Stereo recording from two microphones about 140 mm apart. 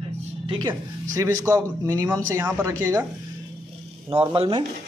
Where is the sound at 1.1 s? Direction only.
25° right (ahead or behind).